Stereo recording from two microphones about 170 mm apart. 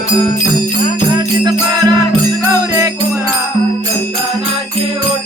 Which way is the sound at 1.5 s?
25° right (ahead or behind).